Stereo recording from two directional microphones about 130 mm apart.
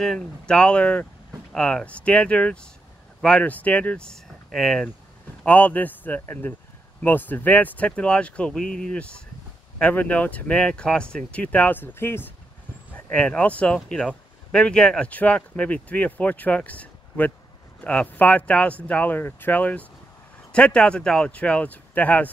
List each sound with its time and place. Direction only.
0.0 s speech: 5° left (ahead or behind)